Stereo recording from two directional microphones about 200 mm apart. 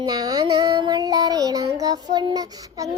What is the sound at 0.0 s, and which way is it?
Music, 20° right (ahead or behind).